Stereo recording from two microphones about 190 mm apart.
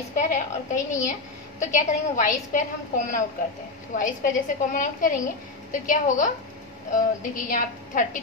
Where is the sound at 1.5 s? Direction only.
40° left (ahead or behind).